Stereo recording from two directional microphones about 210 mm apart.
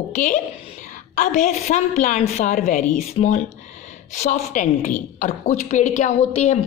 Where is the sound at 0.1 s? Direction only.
35° left (ahead or behind).